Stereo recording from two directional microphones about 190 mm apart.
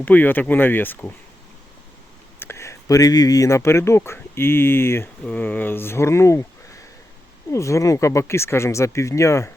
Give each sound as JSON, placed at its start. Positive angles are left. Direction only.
{"t": 0.0, "sound": "speech", "side_deg": 10}
{"t": 2.4, "sound": "speech", "side_deg": 15}